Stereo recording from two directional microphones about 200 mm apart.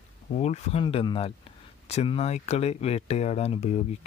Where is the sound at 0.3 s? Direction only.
35° left (ahead or behind).